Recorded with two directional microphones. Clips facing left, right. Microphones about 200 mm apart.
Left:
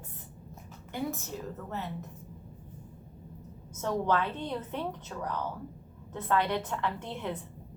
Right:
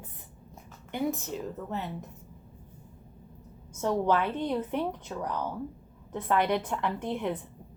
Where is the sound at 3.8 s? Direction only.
10° right (ahead or behind).